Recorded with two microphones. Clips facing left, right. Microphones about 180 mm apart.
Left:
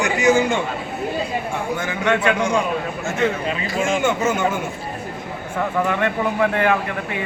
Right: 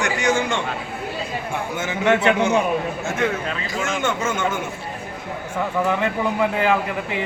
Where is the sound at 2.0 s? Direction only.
25° right (ahead or behind).